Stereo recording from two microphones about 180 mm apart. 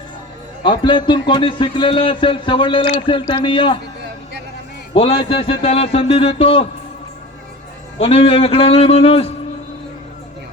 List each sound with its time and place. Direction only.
0.6 s a man's voice: 25° left (ahead or behind)
4.9 s speech: 30° left (ahead or behind)
7.9 s speech: 30° left (ahead or behind)